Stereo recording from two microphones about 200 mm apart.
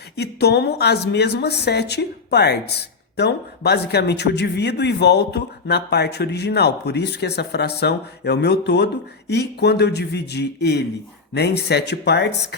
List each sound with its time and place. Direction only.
0.2 s a woman's voice: 55° left (ahead or behind)